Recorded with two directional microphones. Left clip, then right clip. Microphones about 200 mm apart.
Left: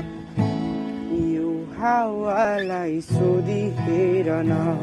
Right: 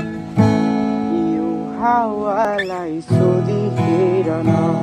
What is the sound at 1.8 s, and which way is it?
Music, 20° left (ahead or behind).